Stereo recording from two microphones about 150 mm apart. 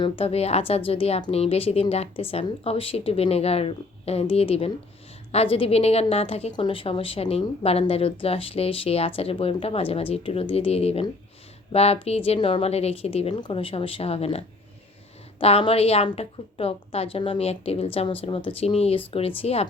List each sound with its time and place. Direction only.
0.0 s a woman's voice: 40° left (ahead or behind)